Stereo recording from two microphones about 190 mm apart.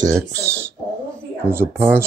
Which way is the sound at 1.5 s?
10° right (ahead or behind).